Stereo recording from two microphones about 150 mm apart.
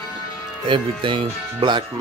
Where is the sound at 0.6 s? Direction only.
35° right (ahead or behind).